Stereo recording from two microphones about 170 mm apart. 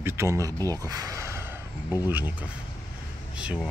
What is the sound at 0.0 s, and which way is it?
Speech, 15° right (ahead or behind).